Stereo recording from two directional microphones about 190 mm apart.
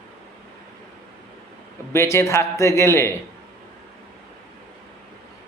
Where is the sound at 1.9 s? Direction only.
15° left (ahead or behind).